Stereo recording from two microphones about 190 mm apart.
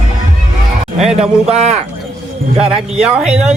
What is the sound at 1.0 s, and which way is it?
Speech, 5° right (ahead or behind).